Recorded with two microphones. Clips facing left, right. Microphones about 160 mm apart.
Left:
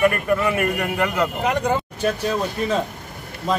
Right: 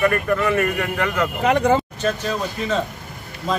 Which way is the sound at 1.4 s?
90° right.